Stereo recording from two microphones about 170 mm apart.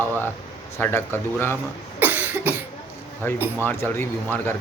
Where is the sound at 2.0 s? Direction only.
10° right (ahead or behind).